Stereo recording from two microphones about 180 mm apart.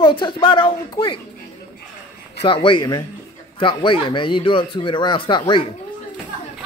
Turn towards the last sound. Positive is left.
turn(degrees=30)  # may be behind; listen again after turning